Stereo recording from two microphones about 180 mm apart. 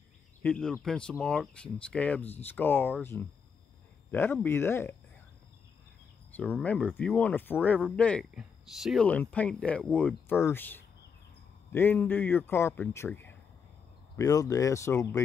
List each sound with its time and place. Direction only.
0.4 s speech: 5° left (ahead or behind)
6.3 s speech: 10° left (ahead or behind)